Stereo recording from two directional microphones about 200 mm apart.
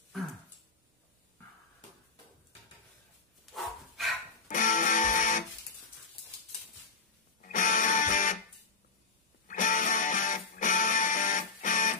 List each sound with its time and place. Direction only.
3.5 s bow-wow: centre (ahead or behind)
4.5 s music: 40° left (ahead or behind)
7.4 s music: 40° left (ahead or behind)
9.5 s music: 40° left (ahead or behind)